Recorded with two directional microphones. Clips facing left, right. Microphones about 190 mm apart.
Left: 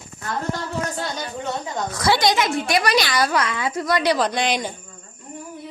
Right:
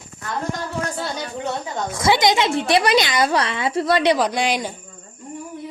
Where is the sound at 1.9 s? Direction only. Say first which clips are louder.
Right 2 dB; 25° right (ahead or behind).